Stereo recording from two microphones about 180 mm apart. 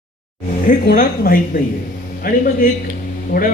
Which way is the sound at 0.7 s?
50° left (ahead or behind).